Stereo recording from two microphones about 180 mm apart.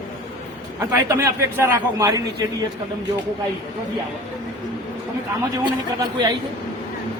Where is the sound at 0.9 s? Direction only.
15° right (ahead or behind).